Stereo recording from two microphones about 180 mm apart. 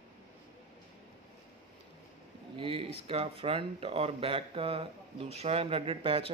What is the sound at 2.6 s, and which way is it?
Speech, 30° right (ahead or behind).